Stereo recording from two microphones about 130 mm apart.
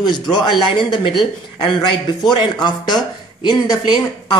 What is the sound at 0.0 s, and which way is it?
Speech, 35° left (ahead or behind).